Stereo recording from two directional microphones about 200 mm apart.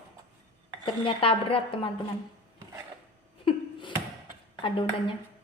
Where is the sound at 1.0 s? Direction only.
25° left (ahead or behind).